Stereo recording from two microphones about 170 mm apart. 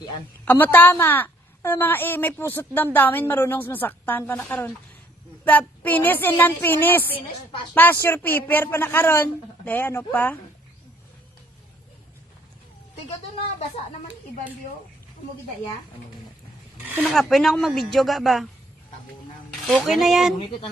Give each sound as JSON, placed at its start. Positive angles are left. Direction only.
{"t": 0.5, "sound": "a woman's voice", "side_deg": 10}
{"t": 16.7, "sound": "speech", "side_deg": -5}
{"t": 19.7, "sound": "speech", "side_deg": 0}